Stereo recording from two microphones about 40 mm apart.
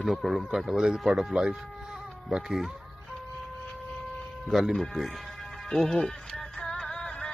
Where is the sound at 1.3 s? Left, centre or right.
Right.